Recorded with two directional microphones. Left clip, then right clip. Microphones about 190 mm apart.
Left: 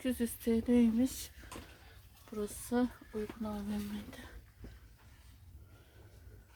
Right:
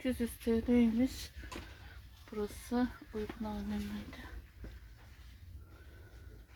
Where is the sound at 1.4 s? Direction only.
10° left (ahead or behind).